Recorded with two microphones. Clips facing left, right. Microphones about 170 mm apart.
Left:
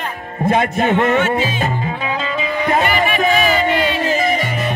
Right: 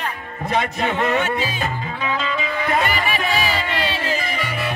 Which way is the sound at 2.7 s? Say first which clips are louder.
Left 5 dB; 45° left (ahead or behind).